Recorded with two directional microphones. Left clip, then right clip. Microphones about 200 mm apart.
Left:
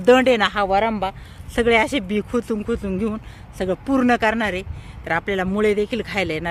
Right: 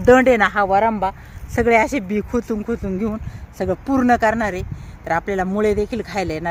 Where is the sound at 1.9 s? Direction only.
Centre (ahead or behind).